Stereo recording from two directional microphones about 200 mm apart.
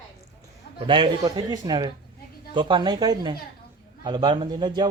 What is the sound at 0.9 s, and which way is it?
A man's voice, 25° right (ahead or behind).